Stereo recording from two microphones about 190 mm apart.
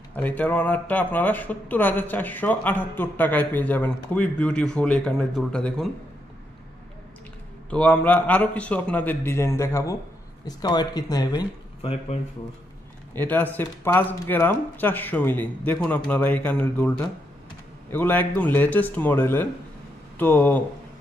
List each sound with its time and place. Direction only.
0.1 s speech: 10° left (ahead or behind)
7.7 s speech: 5° left (ahead or behind); by 12.2 s 30° left (ahead or behind)
13.1 s speech: 10° left (ahead or behind)